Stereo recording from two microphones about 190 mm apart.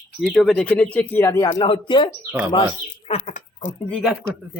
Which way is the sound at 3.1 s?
40° left (ahead or behind).